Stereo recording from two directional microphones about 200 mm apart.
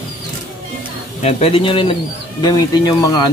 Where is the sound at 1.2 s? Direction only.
30° left (ahead or behind).